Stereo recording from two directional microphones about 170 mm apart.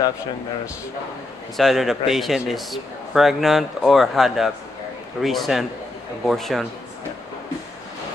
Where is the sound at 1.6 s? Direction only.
Centre (ahead or behind).